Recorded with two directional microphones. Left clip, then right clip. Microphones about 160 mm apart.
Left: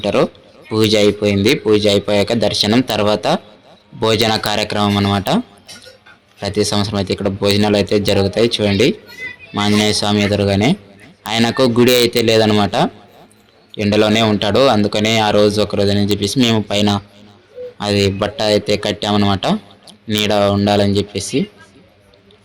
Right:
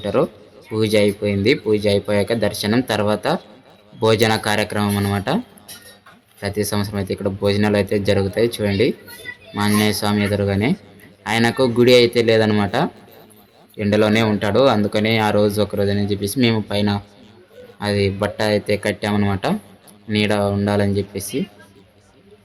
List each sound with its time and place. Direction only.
0.0 s speech: 10° left (ahead or behind)
6.4 s speech: 15° left (ahead or behind)